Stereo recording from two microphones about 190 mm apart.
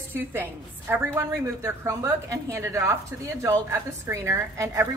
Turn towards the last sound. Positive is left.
turn(degrees=-15)  # may be behind; listen again after turning